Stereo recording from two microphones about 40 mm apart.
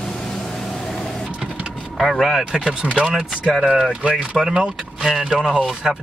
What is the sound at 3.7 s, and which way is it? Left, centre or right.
Speech, centre.